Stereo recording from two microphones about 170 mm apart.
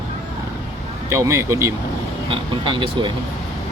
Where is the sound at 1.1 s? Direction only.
15° right (ahead or behind).